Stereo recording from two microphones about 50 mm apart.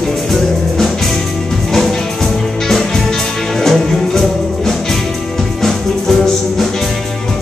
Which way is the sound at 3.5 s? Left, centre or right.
Centre.